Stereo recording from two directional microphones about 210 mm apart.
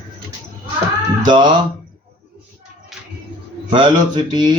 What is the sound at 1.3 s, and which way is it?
Speech, 20° right (ahead or behind).